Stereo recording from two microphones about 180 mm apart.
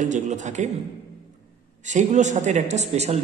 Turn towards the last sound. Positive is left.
turn(degrees=-40)  # may be behind; listen again after turning